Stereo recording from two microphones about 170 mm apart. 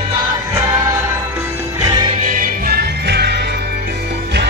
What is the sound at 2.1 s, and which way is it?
Music, 45° right (ahead or behind).